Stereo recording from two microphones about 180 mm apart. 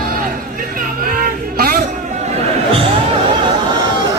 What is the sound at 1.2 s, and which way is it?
Music, 55° right (ahead or behind).